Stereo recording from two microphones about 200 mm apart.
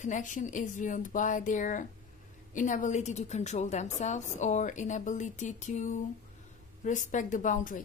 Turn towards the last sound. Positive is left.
turn(degrees=40)  # may be behind; listen again after turning